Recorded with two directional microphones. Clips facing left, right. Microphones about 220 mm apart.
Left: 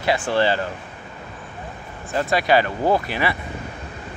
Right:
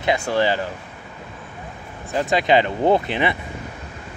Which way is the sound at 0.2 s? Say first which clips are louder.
Even; 15° right (ahead or behind).